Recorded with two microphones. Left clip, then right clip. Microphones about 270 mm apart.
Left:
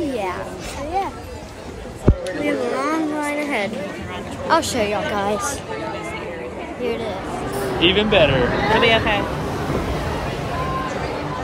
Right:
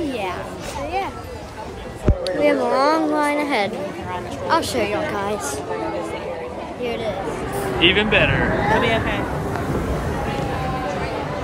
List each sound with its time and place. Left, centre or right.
2.4 s a sound: centre
4.5 s a woman's voice: centre
6.8 s speech: centre
7.8 s speech: centre
8.6 s a woman's voice: centre